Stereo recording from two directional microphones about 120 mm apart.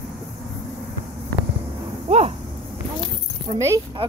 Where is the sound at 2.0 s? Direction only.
60° right (ahead or behind).